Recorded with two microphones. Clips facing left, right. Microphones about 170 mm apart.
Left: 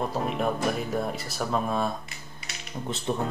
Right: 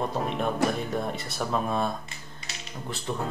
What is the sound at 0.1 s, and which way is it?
Speech, centre (ahead or behind).